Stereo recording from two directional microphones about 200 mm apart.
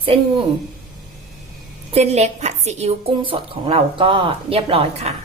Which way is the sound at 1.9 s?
30° right (ahead or behind).